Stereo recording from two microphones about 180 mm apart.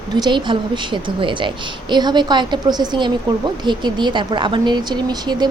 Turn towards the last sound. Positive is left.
turn(degrees=-25)  # may be behind; listen again after turning